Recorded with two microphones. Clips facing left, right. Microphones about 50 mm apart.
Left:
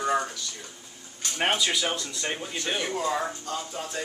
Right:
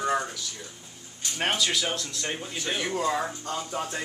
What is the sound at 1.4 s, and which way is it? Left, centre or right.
A man's voice, centre.